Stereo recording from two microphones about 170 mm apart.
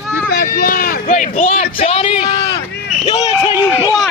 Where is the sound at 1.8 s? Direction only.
35° left (ahead or behind).